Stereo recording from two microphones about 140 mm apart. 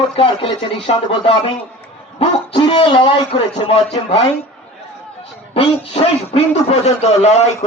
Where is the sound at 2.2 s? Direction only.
45° left (ahead or behind).